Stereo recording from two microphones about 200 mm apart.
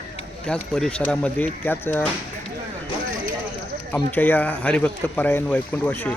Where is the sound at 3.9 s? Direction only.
10° left (ahead or behind).